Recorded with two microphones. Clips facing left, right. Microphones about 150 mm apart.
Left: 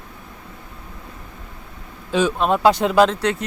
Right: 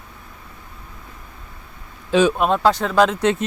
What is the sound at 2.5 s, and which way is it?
Speech, 15° left (ahead or behind).